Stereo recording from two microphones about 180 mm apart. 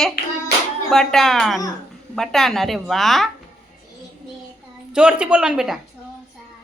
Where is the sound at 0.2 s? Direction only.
60° left (ahead or behind).